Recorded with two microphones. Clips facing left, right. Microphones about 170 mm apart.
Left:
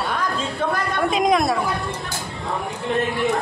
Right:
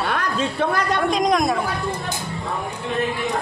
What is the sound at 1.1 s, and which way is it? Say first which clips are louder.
Speech: left 2 dB; 5° left (ahead or behind).